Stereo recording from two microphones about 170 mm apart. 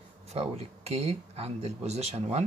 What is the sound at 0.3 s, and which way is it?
Speech, 40° right (ahead or behind).